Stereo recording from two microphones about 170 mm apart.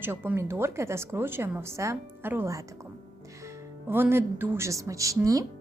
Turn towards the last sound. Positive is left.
turn(degrees=-20)  # may be behind; listen again after turning